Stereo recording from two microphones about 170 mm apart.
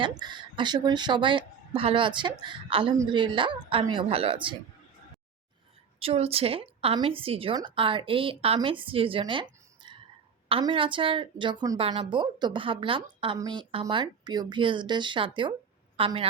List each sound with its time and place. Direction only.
0.2 s a woman's voice: 25° right (ahead or behind)
6.0 s a woman's voice: 35° right (ahead or behind)